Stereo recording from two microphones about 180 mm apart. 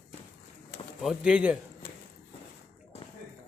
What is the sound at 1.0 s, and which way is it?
Speech, 5° right (ahead or behind).